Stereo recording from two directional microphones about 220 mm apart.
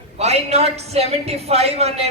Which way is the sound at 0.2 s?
30° right (ahead or behind).